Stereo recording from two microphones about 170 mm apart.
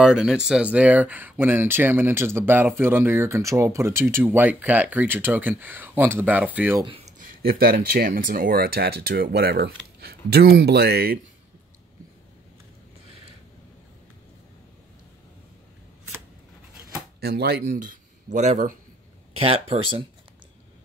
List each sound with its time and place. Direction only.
0.0 s speech: 5° right (ahead or behind)
7.2 s speech: 60° right (ahead or behind)
17.2 s speech: 70° right (ahead or behind); by 20.1 s 30° right (ahead or behind)